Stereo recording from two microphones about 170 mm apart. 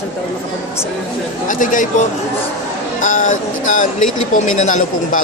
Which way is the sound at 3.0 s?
50° left (ahead or behind).